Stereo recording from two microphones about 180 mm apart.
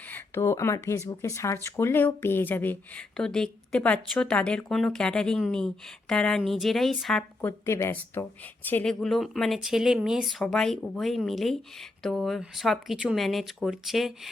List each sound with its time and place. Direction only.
0.1 s speech: 15° left (ahead or behind)